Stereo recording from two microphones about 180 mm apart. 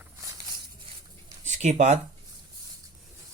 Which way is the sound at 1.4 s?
40° right (ahead or behind).